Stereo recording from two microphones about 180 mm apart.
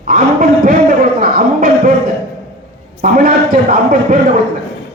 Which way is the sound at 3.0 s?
50° right (ahead or behind).